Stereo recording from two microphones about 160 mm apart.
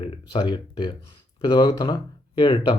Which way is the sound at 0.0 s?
30° left (ahead or behind).